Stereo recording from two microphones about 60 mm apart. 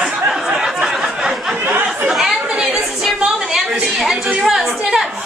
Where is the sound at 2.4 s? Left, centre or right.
Centre.